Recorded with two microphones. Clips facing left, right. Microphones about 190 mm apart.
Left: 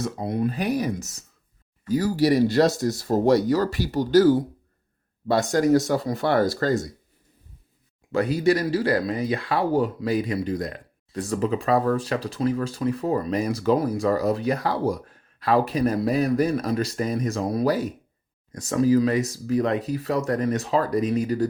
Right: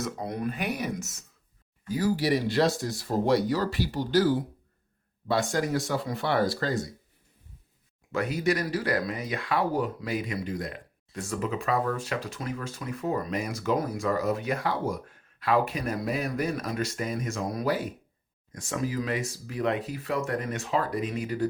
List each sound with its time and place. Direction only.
0.0 s speech: 25° left (ahead or behind); by 4.3 s 45° left (ahead or behind)
5.3 s speech: 40° left (ahead or behind)
8.1 s speech: 30° left (ahead or behind)